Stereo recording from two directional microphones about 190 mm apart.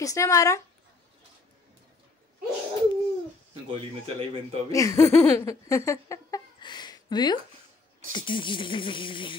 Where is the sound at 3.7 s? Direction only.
30° right (ahead or behind).